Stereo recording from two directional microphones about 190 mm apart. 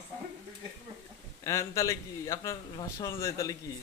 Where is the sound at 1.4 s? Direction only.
15° left (ahead or behind).